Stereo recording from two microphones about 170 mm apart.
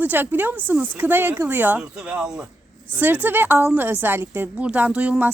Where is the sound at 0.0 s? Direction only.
10° right (ahead or behind).